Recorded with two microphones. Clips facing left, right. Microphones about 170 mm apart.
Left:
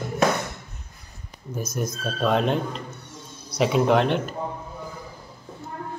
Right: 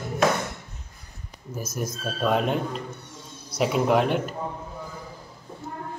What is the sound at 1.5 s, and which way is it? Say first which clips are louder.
Speech: left 2 dB; 5° right (ahead or behind).